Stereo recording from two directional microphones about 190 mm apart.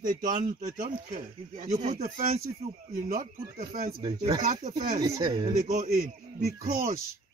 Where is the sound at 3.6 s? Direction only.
45° right (ahead or behind).